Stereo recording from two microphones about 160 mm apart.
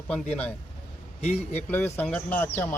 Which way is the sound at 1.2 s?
40° left (ahead or behind).